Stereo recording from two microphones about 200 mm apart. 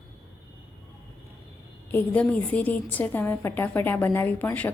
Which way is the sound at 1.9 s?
10° left (ahead or behind).